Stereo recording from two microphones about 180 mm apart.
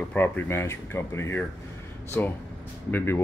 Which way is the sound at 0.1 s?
10° left (ahead or behind).